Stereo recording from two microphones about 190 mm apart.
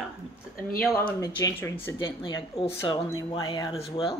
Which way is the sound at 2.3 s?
25° left (ahead or behind).